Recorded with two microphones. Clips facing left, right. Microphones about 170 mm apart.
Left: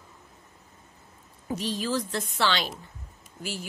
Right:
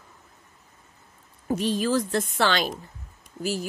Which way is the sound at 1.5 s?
50° right (ahead or behind).